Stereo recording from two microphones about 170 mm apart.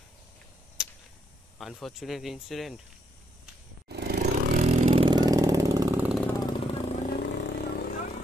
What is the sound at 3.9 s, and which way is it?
Motorcycle, 70° right (ahead or behind).